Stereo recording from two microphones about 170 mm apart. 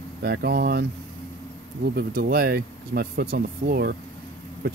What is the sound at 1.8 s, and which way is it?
Speech, 60° right (ahead or behind).